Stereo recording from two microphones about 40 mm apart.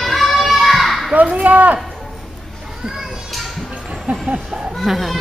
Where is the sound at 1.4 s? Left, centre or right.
Right.